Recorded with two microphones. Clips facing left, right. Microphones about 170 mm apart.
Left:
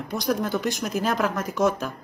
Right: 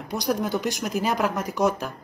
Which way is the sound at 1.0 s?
15° right (ahead or behind).